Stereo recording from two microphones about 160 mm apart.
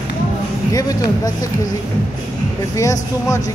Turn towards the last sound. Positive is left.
turn(degrees=20)  # may be behind; listen again after turning